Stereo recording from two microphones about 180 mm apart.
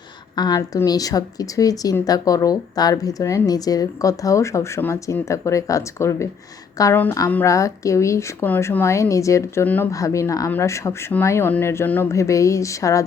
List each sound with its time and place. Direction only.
0.3 s a woman's voice: 20° left (ahead or behind)